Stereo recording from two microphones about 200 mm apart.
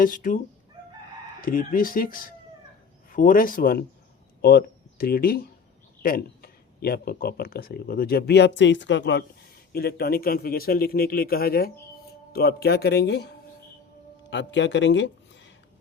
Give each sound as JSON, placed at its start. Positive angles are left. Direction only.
{"t": 0.0, "sound": "speech", "side_deg": 45}
{"t": 1.4, "sound": "speech", "side_deg": 45}
{"t": 9.7, "sound": "speech", "side_deg": 50}